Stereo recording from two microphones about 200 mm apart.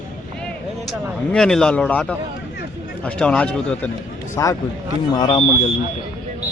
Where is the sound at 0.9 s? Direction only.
5° left (ahead or behind).